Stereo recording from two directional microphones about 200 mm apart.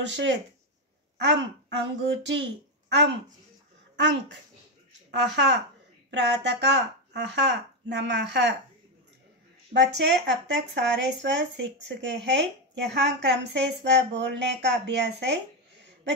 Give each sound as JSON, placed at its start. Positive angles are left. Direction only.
{"t": 0.0, "sound": "a child's voice", "side_deg": -65}
{"t": 9.7, "sound": "speech", "side_deg": -55}